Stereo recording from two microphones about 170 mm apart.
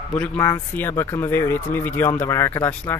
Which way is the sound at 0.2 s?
15° left (ahead or behind).